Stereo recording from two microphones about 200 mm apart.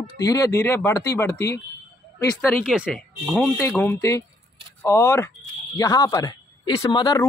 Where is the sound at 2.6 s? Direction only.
5° right (ahead or behind).